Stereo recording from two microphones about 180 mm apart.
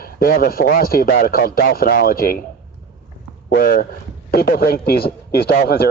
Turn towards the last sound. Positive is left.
turn(degrees=60)  # may be behind; listen again after turning